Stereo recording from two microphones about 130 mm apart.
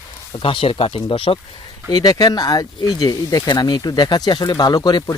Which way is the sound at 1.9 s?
30° left (ahead or behind).